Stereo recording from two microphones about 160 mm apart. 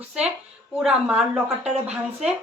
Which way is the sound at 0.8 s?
5° right (ahead or behind).